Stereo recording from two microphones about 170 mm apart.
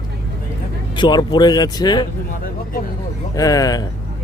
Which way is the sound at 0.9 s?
25° left (ahead or behind).